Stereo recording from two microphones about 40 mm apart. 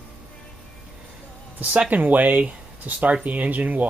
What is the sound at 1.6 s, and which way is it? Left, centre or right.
Speech, right.